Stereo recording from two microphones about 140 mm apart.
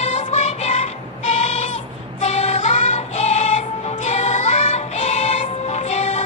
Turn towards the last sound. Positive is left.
turn(degrees=55)  # may be behind; listen again after turning